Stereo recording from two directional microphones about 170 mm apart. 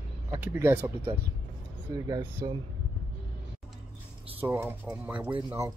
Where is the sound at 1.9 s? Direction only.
20° right (ahead or behind).